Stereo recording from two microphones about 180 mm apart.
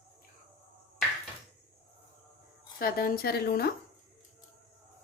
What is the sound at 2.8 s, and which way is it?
Speech, 55° left (ahead or behind).